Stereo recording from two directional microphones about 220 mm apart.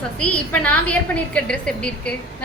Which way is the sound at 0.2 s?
5° left (ahead or behind).